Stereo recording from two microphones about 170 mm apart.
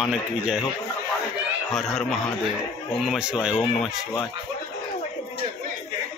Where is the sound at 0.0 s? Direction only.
5° right (ahead or behind).